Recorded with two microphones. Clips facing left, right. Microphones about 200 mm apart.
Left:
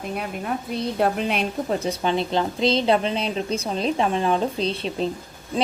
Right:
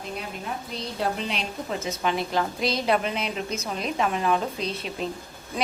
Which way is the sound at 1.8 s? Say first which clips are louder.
Left 4 dB; 30° left (ahead or behind).